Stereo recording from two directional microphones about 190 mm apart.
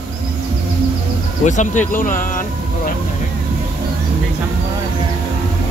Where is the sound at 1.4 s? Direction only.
40° left (ahead or behind).